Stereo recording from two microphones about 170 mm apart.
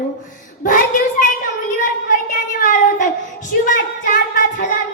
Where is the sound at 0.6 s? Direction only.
50° left (ahead or behind).